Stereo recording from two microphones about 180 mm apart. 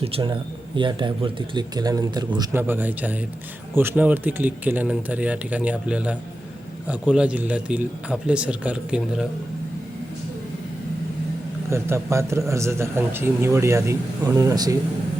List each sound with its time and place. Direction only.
0.0 s speech: 30° right (ahead or behind); by 9.2 s 5° right (ahead or behind)
11.7 s speech: 15° right (ahead or behind)